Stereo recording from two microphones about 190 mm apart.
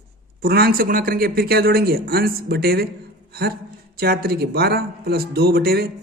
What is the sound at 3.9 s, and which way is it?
Speech, 50° right (ahead or behind).